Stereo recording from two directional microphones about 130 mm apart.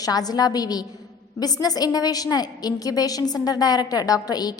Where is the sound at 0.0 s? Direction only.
30° left (ahead or behind).